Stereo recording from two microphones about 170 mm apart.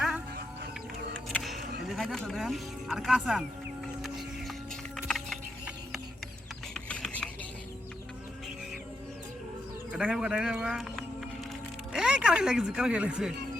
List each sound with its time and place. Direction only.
1.3 s speech: centre (ahead or behind)
5.0 s music: centre (ahead or behind)
6.7 s a sound: 5° left (ahead or behind)
9.9 s speech: 5° right (ahead or behind)